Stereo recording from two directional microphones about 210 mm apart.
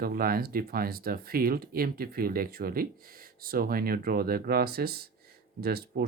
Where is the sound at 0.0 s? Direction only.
45° right (ahead or behind).